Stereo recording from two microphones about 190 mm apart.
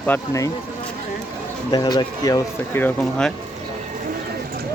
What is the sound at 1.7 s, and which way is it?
Speech, 25° left (ahead or behind).